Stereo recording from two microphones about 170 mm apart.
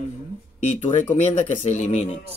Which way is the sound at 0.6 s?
40° left (ahead or behind).